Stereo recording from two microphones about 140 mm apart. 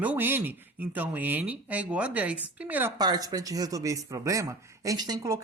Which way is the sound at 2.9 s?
30° right (ahead or behind).